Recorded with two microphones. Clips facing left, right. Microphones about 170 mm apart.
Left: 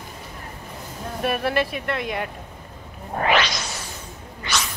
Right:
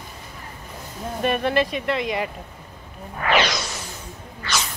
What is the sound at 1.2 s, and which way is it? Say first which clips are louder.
Speech: right 2 dB; 5° left (ahead or behind).